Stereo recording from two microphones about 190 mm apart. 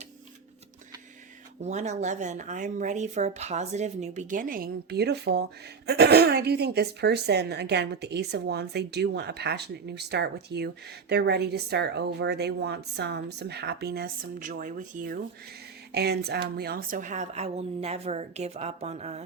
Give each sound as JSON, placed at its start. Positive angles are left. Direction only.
{"t": 1.6, "sound": "speech", "side_deg": -35}
{"t": 15.9, "sound": "a woman's voice", "side_deg": -55}